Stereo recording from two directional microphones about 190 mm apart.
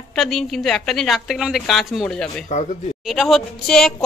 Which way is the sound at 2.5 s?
35° left (ahead or behind).